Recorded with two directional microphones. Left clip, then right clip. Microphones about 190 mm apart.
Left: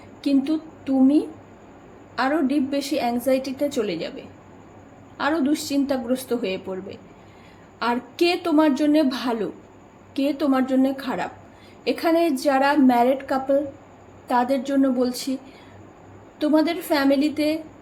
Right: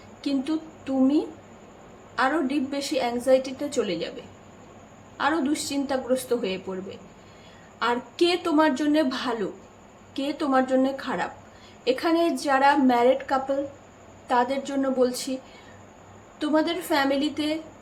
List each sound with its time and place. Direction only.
0.2 s a woman's voice: 15° left (ahead or behind)
5.1 s a woman's voice: 20° left (ahead or behind)
16.4 s a woman's voice: 20° left (ahead or behind)